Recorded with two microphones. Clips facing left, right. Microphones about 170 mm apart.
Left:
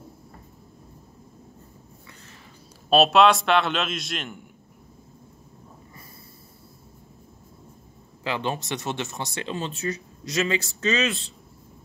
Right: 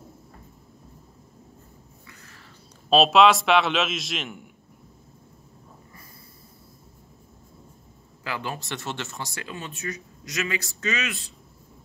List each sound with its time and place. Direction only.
2.9 s a man's voice: centre (ahead or behind)
8.2 s speech: 25° left (ahead or behind)